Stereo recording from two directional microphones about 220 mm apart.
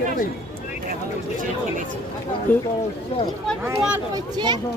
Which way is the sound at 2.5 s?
5° left (ahead or behind).